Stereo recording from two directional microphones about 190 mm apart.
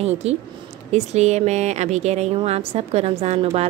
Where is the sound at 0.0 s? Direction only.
35° right (ahead or behind).